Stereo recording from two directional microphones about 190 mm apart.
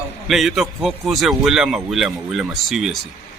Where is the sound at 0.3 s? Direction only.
Centre (ahead or behind).